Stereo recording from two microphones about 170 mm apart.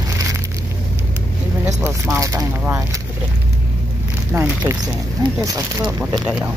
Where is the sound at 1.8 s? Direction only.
15° right (ahead or behind).